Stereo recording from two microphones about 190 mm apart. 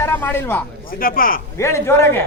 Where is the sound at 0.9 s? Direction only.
50° left (ahead or behind).